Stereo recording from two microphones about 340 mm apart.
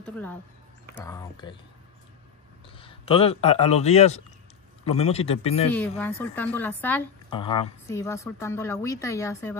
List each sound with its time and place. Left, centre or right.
0.9 s speech: centre
2.8 s speech: centre
5.7 s speech: centre